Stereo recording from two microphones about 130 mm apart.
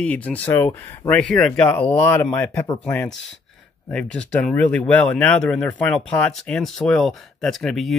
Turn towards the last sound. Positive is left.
turn(degrees=0)  # may be behind; listen again after turning